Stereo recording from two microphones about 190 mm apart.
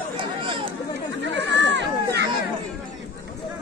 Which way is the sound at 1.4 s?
70° right (ahead or behind).